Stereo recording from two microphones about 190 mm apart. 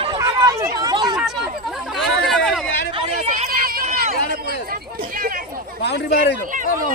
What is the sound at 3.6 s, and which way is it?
Run, 50° right (ahead or behind).